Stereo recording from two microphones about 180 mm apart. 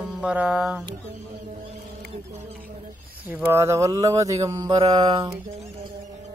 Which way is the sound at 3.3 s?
15° right (ahead or behind).